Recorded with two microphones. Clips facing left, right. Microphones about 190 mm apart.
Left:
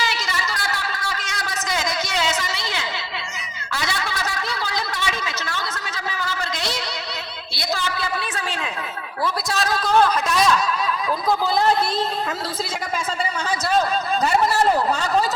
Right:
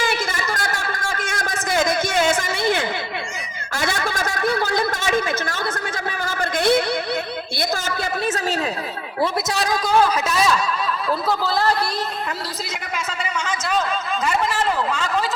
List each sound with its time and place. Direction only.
0.0 s a sound: 50° right (ahead or behind)
9.6 s a man's voice: 15° right (ahead or behind)
11.3 s a man's voice: 15° left (ahead or behind)
14.3 s a man's voice: 40° left (ahead or behind)